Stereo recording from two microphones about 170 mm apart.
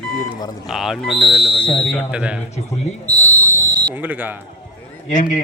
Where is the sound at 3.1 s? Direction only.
20° right (ahead or behind).